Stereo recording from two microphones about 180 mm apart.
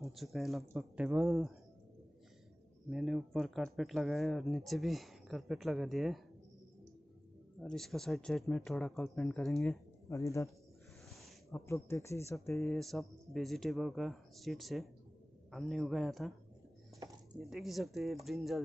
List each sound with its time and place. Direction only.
0.0 s speech: centre (ahead or behind)
2.9 s speech: centre (ahead or behind)
7.6 s speech: centre (ahead or behind)
10.0 s speech: 15° left (ahead or behind)
11.5 s speech: 15° left (ahead or behind)
12.5 s speech: centre (ahead or behind)
17.5 s speech: centre (ahead or behind)